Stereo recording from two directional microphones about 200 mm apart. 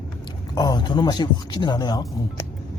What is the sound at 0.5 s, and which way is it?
Speech, 20° left (ahead or behind).